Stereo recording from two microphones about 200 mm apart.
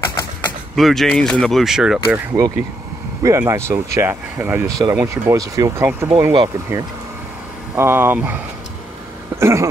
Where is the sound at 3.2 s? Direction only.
15° right (ahead or behind).